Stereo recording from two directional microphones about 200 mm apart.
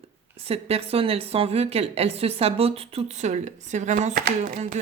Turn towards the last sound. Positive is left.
turn(degrees=-40)  # may be behind; listen again after turning